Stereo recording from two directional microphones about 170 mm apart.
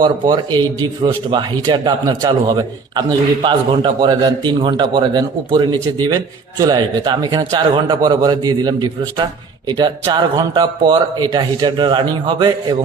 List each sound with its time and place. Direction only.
0.0 s a man's voice: 25° right (ahead or behind)